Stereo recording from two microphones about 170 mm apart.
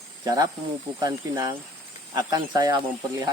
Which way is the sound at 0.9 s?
25° right (ahead or behind).